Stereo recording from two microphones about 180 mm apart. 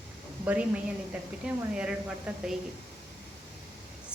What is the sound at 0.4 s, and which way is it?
A woman's voice, 5° right (ahead or behind).